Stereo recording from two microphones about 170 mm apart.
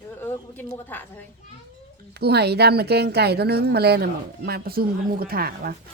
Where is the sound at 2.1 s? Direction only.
70° right (ahead or behind).